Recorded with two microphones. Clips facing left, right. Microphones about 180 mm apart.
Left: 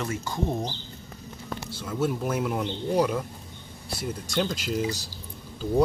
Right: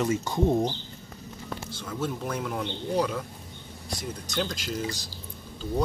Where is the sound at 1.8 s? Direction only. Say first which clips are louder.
Left 5 dB; 5° left (ahead or behind).